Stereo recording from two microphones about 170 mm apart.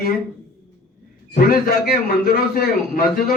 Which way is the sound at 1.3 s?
65° left (ahead or behind).